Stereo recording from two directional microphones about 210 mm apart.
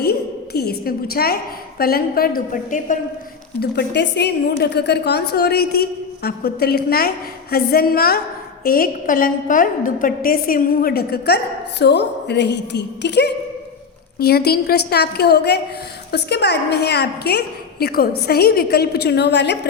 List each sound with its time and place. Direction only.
0.0 s a woman's voice: 50° left (ahead or behind)
3.6 s a woman's voice: 50° left (ahead or behind)